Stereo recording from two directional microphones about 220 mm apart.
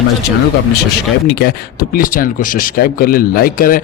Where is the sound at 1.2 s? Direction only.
50° left (ahead or behind).